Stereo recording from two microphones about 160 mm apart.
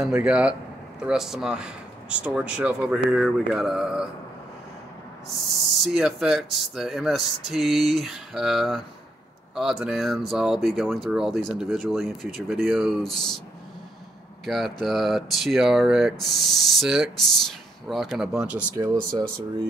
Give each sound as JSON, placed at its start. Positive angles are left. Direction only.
{"t": 0.0, "sound": "speech", "side_deg": -5}
{"t": 5.3, "sound": "speech", "side_deg": 0}
{"t": 14.4, "sound": "speech", "side_deg": 0}
{"t": 18.8, "sound": "speech", "side_deg": -20}